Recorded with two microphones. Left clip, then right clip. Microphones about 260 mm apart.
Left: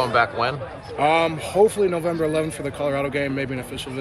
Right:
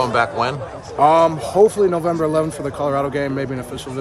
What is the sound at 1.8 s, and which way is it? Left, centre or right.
Speech, centre.